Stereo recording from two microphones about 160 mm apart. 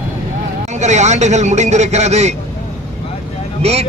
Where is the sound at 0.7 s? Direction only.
45° right (ahead or behind).